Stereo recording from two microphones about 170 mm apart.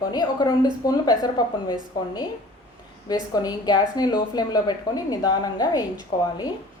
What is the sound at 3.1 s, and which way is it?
A woman's voice, 25° left (ahead or behind).